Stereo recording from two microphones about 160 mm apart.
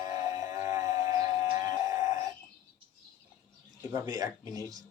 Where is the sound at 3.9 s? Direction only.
20° right (ahead or behind).